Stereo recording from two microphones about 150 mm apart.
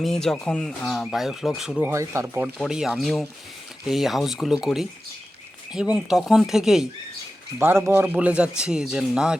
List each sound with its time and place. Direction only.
0.0 s speech: 5° left (ahead or behind)
1.9 s a man's voice: 20° right (ahead or behind); by 6.8 s 5° right (ahead or behind)
7.6 s a man's voice: 15° right (ahead or behind)